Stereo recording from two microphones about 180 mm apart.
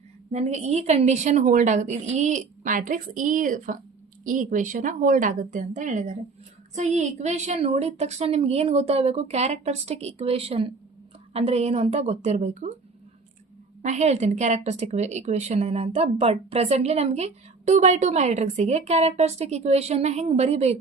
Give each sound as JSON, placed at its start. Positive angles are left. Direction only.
{"t": 0.3, "sound": "a woman's voice", "side_deg": -40}
{"t": 13.8, "sound": "speech", "side_deg": -40}